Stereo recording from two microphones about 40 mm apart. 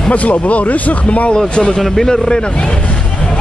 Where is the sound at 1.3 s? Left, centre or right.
Left.